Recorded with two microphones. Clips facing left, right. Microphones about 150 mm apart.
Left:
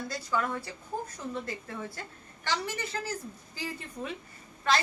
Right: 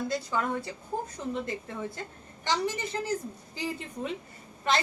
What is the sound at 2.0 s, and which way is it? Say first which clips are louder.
A woman's voice: right 3 dB; 20° right (ahead or behind).